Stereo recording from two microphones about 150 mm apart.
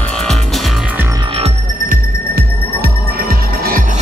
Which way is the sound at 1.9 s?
85° right.